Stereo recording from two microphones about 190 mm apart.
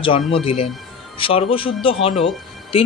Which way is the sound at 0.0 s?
30° left (ahead or behind).